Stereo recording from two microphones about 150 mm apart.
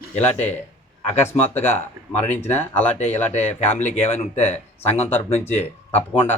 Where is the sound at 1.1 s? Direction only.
15° left (ahead or behind).